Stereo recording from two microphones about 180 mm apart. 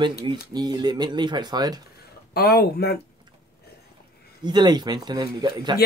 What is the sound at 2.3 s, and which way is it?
Speech, 60° left (ahead or behind).